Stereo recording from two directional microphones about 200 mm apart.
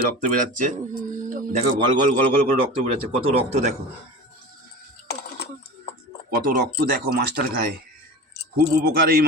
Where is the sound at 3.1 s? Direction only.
30° right (ahead or behind).